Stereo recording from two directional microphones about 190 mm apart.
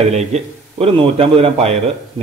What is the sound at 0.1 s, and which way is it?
A man's voice, 35° right (ahead or behind).